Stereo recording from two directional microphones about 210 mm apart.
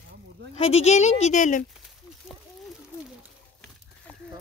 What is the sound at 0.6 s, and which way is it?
A woman's voice, 30° left (ahead or behind).